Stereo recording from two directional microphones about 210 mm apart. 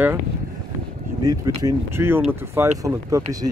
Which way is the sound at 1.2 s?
15° right (ahead or behind).